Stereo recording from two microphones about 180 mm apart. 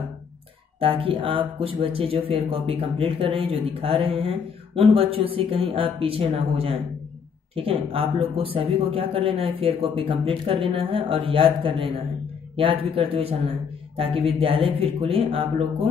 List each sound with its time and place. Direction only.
0.7 s speech: 30° right (ahead or behind)